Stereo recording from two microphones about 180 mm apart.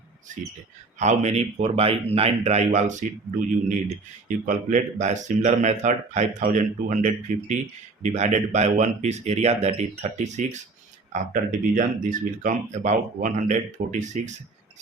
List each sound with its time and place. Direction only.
0.9 s speech: 40° right (ahead or behind)